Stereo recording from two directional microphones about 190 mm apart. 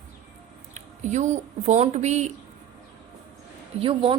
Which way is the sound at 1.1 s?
40° right (ahead or behind).